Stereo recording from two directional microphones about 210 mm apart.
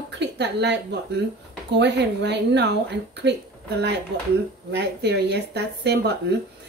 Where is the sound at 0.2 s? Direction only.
55° right (ahead or behind).